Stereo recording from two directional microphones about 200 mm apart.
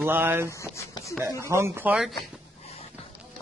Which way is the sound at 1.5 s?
10° right (ahead or behind).